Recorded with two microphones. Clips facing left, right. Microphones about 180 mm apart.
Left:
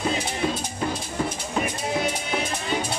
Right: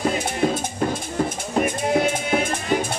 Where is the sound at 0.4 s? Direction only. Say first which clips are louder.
Right 7 dB; 50° right (ahead or behind).